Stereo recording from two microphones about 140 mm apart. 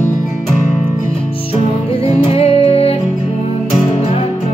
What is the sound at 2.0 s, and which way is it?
Music, 45° left (ahead or behind).